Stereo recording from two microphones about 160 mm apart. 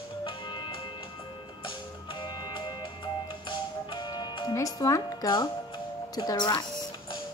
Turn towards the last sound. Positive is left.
turn(degrees=25)  # may be behind; listen again after turning